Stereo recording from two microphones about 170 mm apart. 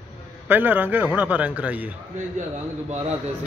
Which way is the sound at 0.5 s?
10° right (ahead or behind).